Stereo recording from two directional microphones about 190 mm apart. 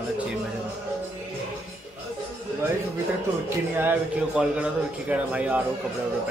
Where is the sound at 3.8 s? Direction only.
10° right (ahead or behind).